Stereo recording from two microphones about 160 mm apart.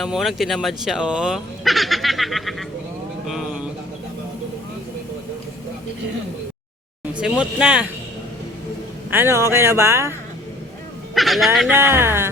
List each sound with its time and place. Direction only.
0.0 s speech: centre (ahead or behind)
7.0 s speech: 5° right (ahead or behind)
9.0 s speech: 15° right (ahead or behind)
11.1 s speech: centre (ahead or behind)
11.7 s speech: 15° right (ahead or behind)